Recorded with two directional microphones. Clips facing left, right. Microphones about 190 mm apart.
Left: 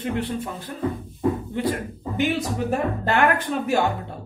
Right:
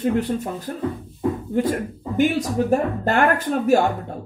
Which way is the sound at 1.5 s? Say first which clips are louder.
Right 4 dB; 45° right (ahead or behind).